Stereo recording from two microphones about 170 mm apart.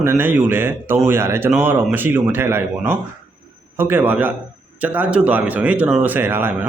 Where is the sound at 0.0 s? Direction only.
15° right (ahead or behind).